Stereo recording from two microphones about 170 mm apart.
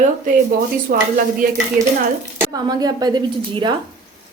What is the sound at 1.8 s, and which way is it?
Speech, 50° right (ahead or behind).